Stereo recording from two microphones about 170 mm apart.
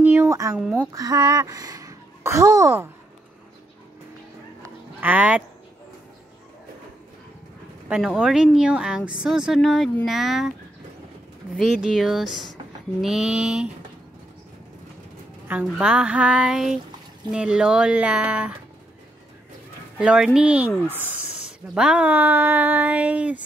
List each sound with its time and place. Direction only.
0.0 s a sound: 10° right (ahead or behind)
0.6 s a woman's voice: centre (ahead or behind)
0.9 s speech: 20° right (ahead or behind)
4.6 s honk: 10° right (ahead or behind)
7.9 s a woman's voice: 5° right (ahead or behind)
11.5 s a woman's voice: 5° right (ahead or behind)
15.4 s a woman's voice: 10° right (ahead or behind)
20.0 s a woman's voice: 5° right (ahead or behind)
21.7 s speech: 5° right (ahead or behind)